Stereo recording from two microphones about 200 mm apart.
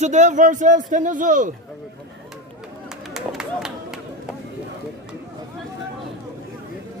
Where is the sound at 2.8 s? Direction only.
Centre (ahead or behind).